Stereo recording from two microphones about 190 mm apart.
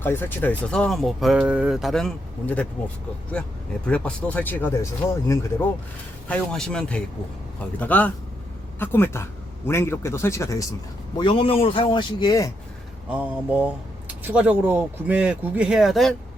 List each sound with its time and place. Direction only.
0.0 s speech: 10° left (ahead or behind)
6.2 s speech: 5° left (ahead or behind)
11.2 s a man's voice: 30° left (ahead or behind)
13.1 s speech: 10° right (ahead or behind)